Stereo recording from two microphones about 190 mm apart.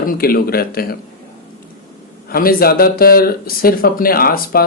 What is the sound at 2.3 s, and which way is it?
Speech, 50° left (ahead or behind).